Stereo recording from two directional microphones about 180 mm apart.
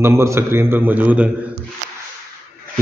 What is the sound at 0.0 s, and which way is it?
A man's voice, 15° right (ahead or behind).